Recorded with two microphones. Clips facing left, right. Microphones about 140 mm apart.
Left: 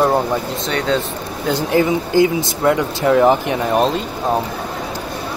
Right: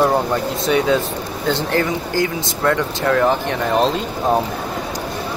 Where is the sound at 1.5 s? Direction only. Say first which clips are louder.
Left 3 dB; 15° left (ahead or behind).